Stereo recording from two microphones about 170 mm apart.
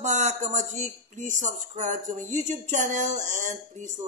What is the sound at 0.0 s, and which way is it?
Speech, 45° right (ahead or behind).